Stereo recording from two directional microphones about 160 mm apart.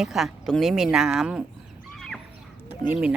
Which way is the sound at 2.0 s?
Centre (ahead or behind).